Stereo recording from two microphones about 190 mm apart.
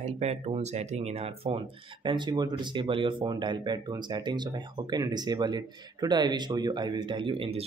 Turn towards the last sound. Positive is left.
turn(degrees=-30)  # may be behind; listen again after turning